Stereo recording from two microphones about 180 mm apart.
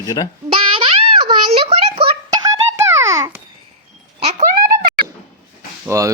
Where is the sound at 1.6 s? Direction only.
30° right (ahead or behind).